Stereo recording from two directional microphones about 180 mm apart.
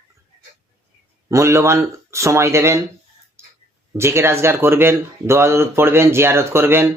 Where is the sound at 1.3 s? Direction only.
15° right (ahead or behind).